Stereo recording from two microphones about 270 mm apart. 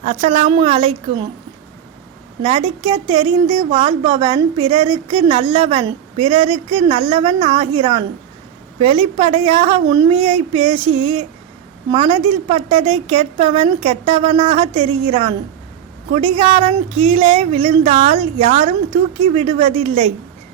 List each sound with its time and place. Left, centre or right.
0.0 s a woman's voice: right
2.4 s a woman's voice: centre